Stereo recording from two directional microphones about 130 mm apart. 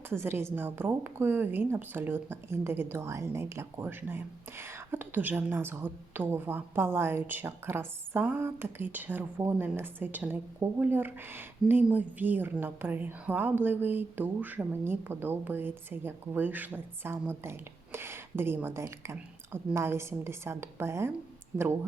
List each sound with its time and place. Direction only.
0.1 s a woman's voice: 20° right (ahead or behind)